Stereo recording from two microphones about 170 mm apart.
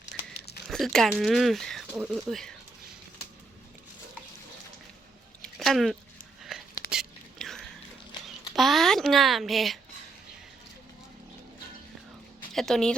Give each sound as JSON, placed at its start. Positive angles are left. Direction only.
{"t": 0.0, "sound": "crumpling", "side_deg": 90}
{"t": 0.7, "sound": "speech", "side_deg": 0}
{"t": 5.4, "sound": "a sound", "side_deg": 0}
{"t": 6.5, "sound": "whispering", "side_deg": -5}
{"t": 8.5, "sound": "speech", "side_deg": 0}
{"t": 12.5, "sound": "speech", "side_deg": 0}